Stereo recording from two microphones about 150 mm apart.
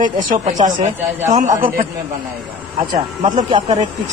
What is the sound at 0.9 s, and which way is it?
Speech, 15° right (ahead or behind).